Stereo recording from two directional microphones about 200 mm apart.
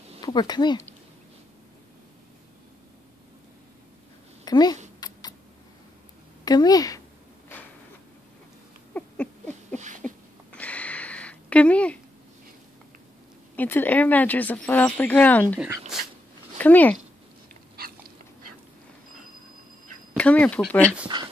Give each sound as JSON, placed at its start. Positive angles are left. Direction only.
{"t": 0.2, "sound": "speech", "side_deg": 20}
{"t": 4.5, "sound": "speech", "side_deg": 20}
{"t": 5.0, "sound": "a sound", "side_deg": 20}
{"t": 6.4, "sound": "a woman's voice", "side_deg": 20}
{"t": 8.9, "sound": "patter", "side_deg": 5}
{"t": 9.8, "sound": "a sound", "side_deg": -40}
{"t": 10.0, "sound": "a sound", "side_deg": 5}
{"t": 13.6, "sound": "speech", "side_deg": 10}
{"t": 15.9, "sound": "dog", "side_deg": 0}
{"t": 16.5, "sound": "speech", "side_deg": 10}
{"t": 20.2, "sound": "speech", "side_deg": 5}